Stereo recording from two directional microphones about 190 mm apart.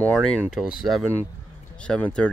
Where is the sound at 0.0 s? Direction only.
5° left (ahead or behind).